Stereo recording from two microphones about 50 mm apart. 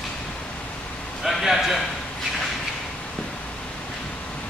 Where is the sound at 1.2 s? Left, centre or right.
Centre.